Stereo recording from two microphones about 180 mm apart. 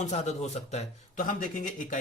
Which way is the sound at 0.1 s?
40° left (ahead or behind).